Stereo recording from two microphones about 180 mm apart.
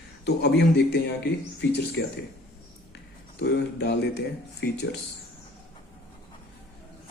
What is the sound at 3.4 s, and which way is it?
A man's voice, 70° left (ahead or behind).